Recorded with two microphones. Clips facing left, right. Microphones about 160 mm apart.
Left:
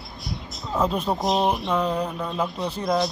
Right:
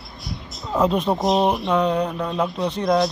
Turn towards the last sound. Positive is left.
turn(degrees=0)  # may be behind; listen again after turning